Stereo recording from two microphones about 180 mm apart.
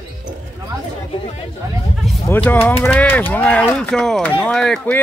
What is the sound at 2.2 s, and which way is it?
Speech, 10° left (ahead or behind).